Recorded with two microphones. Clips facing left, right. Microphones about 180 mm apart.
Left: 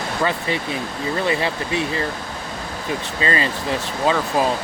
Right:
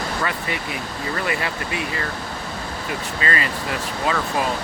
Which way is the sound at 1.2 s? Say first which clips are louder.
Left 4 dB; 25° left (ahead or behind).